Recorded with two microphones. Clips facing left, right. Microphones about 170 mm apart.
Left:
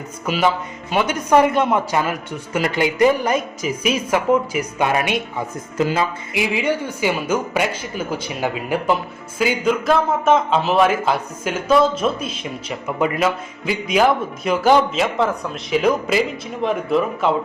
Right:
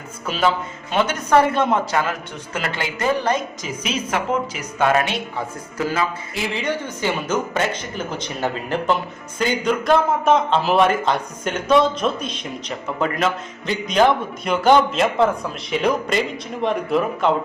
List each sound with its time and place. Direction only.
0.3 s speech: 10° left (ahead or behind)
5.7 s speech: 25° left (ahead or behind)
6.3 s a man's voice: 10° left (ahead or behind)